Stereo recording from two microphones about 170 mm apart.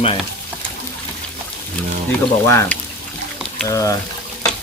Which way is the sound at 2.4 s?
15° left (ahead or behind).